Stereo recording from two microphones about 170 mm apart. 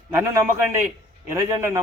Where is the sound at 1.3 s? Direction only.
15° right (ahead or behind).